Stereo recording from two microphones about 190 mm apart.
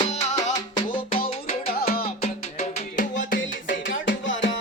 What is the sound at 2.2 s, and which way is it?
Music, 35° left (ahead or behind).